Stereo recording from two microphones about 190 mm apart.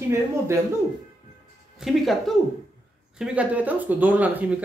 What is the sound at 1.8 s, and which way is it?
Speech, centre (ahead or behind).